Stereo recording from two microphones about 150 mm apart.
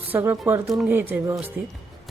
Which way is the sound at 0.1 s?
15° right (ahead or behind).